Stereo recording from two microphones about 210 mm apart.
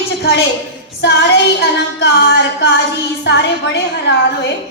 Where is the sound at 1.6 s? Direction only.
50° left (ahead or behind).